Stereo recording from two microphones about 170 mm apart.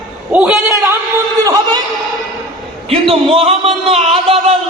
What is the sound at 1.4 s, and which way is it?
Speech, 20° right (ahead or behind).